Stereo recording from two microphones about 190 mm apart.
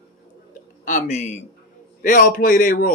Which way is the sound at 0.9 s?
40° left (ahead or behind).